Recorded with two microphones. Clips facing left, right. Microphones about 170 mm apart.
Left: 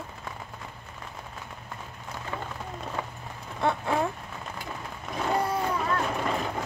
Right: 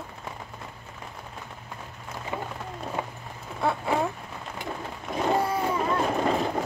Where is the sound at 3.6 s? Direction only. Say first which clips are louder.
Right 1 dB; 5° right (ahead or behind).